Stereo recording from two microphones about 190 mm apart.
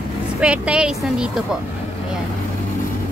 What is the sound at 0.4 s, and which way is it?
Speech, 5° right (ahead or behind).